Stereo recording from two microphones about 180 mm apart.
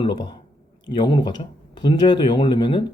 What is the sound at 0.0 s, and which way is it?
Speech, 25° left (ahead or behind).